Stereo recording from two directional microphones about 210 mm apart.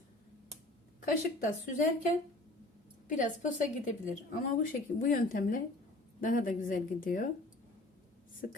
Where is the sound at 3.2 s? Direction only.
35° left (ahead or behind).